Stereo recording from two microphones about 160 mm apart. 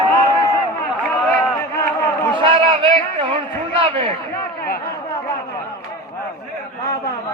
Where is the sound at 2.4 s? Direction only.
35° right (ahead or behind).